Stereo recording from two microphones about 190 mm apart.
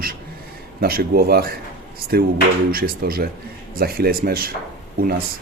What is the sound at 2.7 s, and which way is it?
Speech, 50° right (ahead or behind).